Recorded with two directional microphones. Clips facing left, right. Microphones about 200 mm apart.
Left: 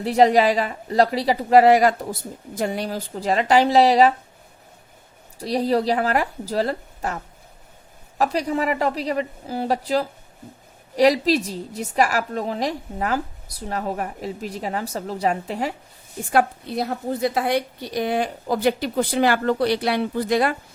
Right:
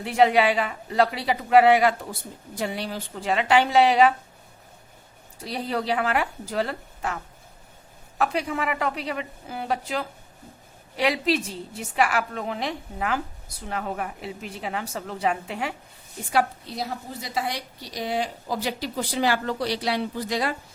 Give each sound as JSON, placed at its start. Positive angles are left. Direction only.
{"t": 0.0, "sound": "a woman's voice", "side_deg": 35}
{"t": 5.4, "sound": "a woman's voice", "side_deg": 35}
{"t": 8.2, "sound": "a woman's voice", "side_deg": 35}
{"t": 16.3, "sound": "a woman's voice", "side_deg": 55}